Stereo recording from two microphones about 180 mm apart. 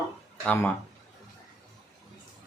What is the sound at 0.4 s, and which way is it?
Speech, 10° left (ahead or behind).